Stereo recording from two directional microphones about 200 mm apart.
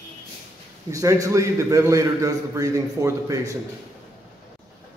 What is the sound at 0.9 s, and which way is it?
A man's voice, 15° right (ahead or behind).